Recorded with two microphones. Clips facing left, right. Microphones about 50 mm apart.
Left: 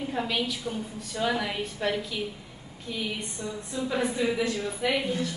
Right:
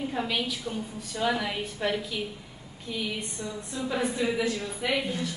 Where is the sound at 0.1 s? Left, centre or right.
Centre.